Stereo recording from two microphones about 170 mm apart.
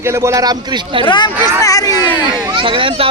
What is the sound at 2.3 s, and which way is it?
Speech, 30° right (ahead or behind).